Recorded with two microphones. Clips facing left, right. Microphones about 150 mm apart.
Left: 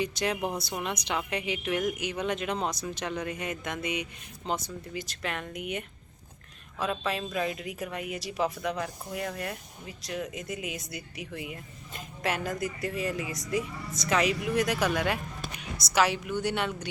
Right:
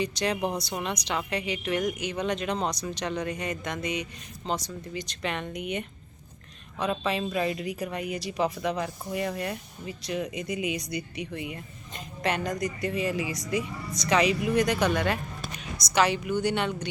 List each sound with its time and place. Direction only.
0.3 s speech: 20° right (ahead or behind)
1.0 s speech: 10° left (ahead or behind)
6.9 s speech: centre (ahead or behind)